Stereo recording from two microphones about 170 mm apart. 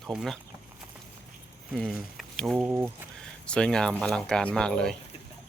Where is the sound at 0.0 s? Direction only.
Centre (ahead or behind).